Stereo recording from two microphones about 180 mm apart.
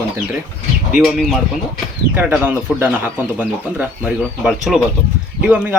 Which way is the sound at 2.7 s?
5° right (ahead or behind).